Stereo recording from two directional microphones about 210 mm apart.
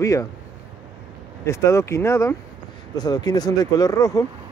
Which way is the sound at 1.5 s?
15° left (ahead or behind).